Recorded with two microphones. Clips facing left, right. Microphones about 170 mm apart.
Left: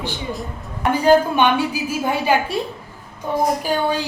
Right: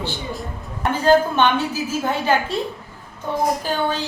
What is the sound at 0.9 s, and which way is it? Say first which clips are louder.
A woman's voice: left 1 dB; 10° left (ahead or behind).